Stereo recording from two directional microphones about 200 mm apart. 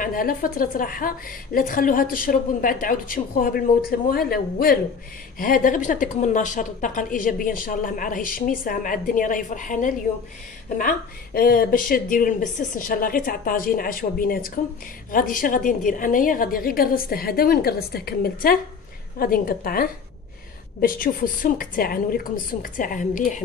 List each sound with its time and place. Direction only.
0.0 s a woman's voice: 45° left (ahead or behind)